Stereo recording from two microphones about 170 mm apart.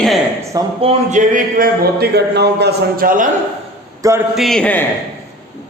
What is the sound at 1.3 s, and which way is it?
Speech, 55° right (ahead or behind).